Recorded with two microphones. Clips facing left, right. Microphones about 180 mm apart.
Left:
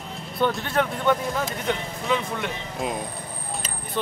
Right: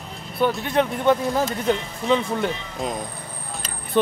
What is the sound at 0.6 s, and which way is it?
Speech, 20° right (ahead or behind).